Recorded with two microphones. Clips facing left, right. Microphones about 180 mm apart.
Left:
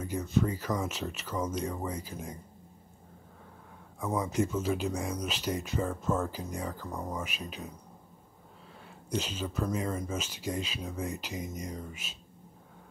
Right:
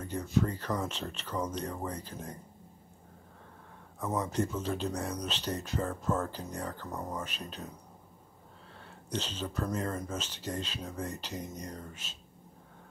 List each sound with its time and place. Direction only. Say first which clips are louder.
0.0 s speech: left 1 dB; 5° left (ahead or behind)
4.0 s speech: left 2 dB; 10° left (ahead or behind)
6.9 s speech: left 1 dB; centre (ahead or behind)
7.2 s speech: left 1 dB; 10° left (ahead or behind)
9.1 s speech: left 2 dB; 10° left (ahead or behind)